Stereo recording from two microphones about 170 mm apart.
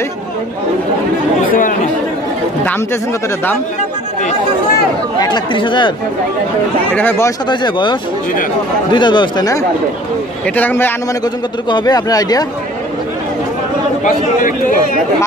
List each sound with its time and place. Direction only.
1.5 s speech: 55° left (ahead or behind)
5.2 s speech: 25° left (ahead or behind)
6.9 s a man's voice: 10° left (ahead or behind)
7.4 s speech: 25° left (ahead or behind)
10.4 s a man's voice: 10° left (ahead or behind)
11.7 s speech: 20° left (ahead or behind)
14.0 s a man's voice: 50° left (ahead or behind)